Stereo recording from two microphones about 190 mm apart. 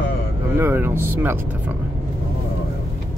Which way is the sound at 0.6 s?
10° right (ahead or behind).